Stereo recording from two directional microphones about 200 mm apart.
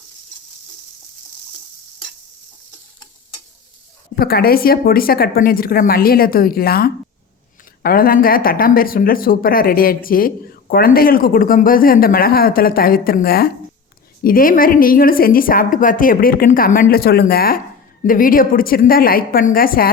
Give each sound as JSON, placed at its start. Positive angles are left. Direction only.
{"t": 4.1, "sound": "speech", "side_deg": 50}